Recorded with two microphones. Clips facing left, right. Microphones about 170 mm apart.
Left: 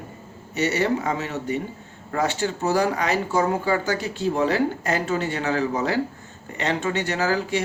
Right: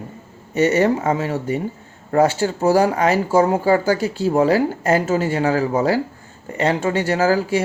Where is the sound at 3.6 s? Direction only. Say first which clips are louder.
Right 7 dB; 40° right (ahead or behind).